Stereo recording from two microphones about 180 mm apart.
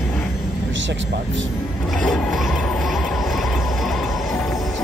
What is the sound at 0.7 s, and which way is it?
Speech, 90° right.